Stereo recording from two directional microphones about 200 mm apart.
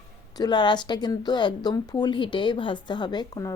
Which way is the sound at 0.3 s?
20° left (ahead or behind).